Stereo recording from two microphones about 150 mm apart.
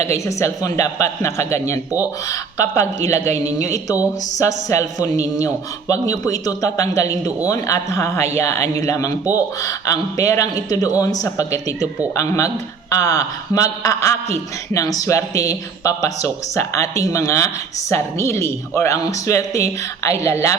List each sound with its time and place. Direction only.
0.0 s a man's voice: 20° left (ahead or behind)